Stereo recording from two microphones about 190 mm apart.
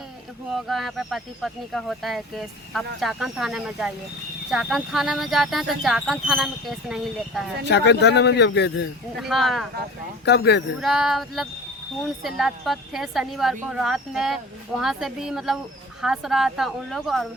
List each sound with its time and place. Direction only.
0.5 s a woman's voice: centre (ahead or behind)
7.7 s a man's voice: 65° left (ahead or behind)
9.1 s a woman's voice: centre (ahead or behind)
10.2 s a man's voice: 60° left (ahead or behind)
10.8 s a woman's voice: centre (ahead or behind)